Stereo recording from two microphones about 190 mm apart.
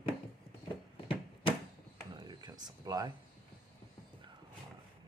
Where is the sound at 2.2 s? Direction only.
20° right (ahead or behind).